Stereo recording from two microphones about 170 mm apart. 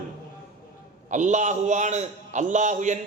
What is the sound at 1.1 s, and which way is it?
A man's voice, 45° right (ahead or behind).